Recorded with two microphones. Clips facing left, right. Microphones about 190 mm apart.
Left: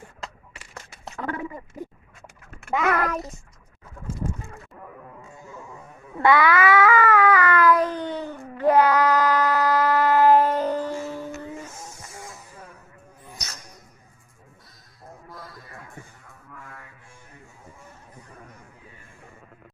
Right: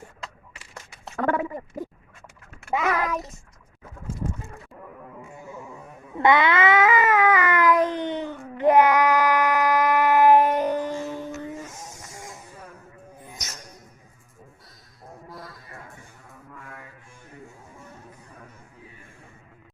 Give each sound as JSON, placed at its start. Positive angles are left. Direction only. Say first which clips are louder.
{"t": 1.2, "sound": "speech", "louder": "right 7 dB", "side_deg": -55}
{"t": 2.7, "sound": "child singing", "louder": "left 1 dB", "side_deg": -5}
{"t": 5.3, "sound": "music", "louder": "right 3 dB", "side_deg": -15}
{"t": 6.1, "sound": "cat", "louder": "left 1 dB", "side_deg": -20}
{"t": 11.4, "sound": "a sound", "louder": "right 1 dB", "side_deg": -15}